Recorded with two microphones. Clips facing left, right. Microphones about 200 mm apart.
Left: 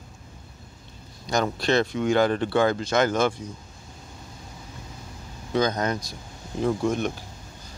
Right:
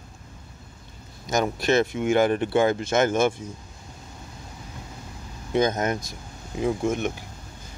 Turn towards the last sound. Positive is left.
turn(degrees=-20)  # may be behind; listen again after turning